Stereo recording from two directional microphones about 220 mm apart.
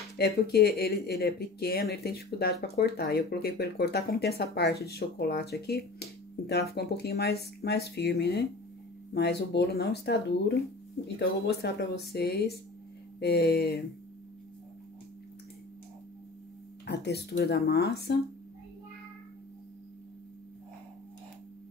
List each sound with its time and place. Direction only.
0.2 s speech: 45° left (ahead or behind)
16.8 s speech: 50° left (ahead or behind)